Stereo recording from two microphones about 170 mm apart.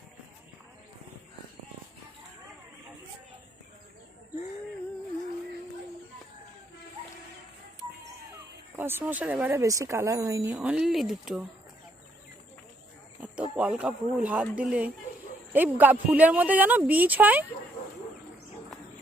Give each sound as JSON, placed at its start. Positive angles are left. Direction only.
{"t": 8.7, "sound": "speech", "side_deg": -15}
{"t": 9.6, "sound": "speech", "side_deg": -20}
{"t": 13.6, "sound": "speech", "side_deg": -5}